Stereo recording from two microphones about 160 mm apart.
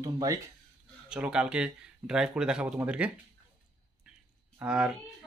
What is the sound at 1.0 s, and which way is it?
Speech, 5° right (ahead or behind).